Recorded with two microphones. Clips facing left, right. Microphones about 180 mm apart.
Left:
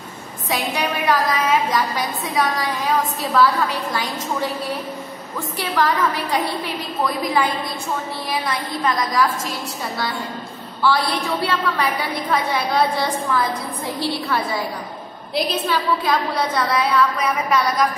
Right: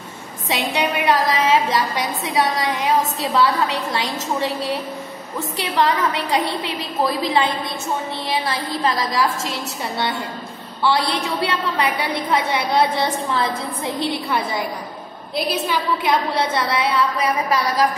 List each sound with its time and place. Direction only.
0.5 s a sound: 25° right (ahead or behind)
6.4 s a woman's voice: 30° right (ahead or behind)
15.4 s a woman's voice: 10° right (ahead or behind)
16.0 s a woman's voice: 25° right (ahead or behind)